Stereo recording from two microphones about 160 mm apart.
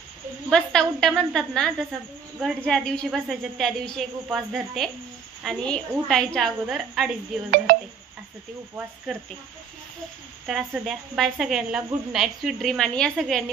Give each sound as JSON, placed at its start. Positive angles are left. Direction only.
{"t": 0.5, "sound": "a woman's voice", "side_deg": 5}
{"t": 7.7, "sound": "telephone dialing", "side_deg": -65}
{"t": 9.1, "sound": "a woman's voice", "side_deg": 0}
{"t": 10.4, "sound": "a woman's voice", "side_deg": 0}